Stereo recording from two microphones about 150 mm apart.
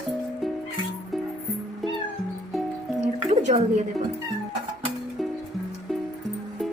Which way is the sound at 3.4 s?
50° right (ahead or behind).